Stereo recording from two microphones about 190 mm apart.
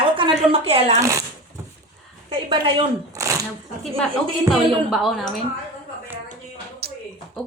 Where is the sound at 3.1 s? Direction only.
15° right (ahead or behind).